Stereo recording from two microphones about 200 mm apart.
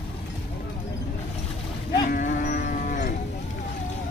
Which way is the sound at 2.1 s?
40° left (ahead or behind).